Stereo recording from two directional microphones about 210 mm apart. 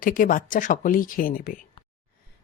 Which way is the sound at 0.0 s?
40° left (ahead or behind).